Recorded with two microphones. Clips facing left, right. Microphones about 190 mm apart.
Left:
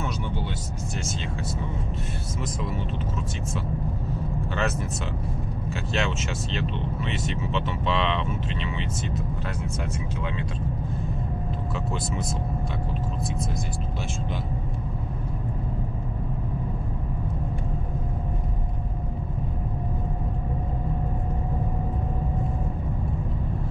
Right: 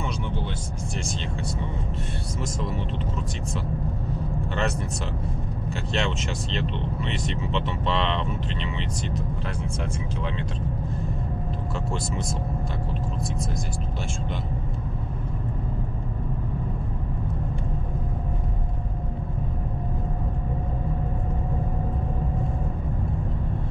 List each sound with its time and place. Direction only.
5.7 s speech: centre (ahead or behind)